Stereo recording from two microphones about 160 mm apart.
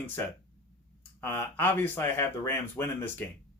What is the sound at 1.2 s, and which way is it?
Speech, 10° left (ahead or behind).